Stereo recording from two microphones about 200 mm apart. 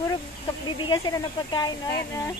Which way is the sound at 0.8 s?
20° left (ahead or behind).